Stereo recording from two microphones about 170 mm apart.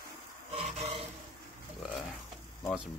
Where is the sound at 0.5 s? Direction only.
35° right (ahead or behind).